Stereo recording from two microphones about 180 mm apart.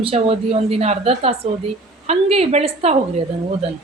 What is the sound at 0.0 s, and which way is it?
Speech, 30° right (ahead or behind).